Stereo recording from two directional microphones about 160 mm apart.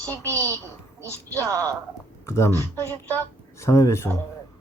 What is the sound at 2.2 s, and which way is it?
Speech, 15° left (ahead or behind).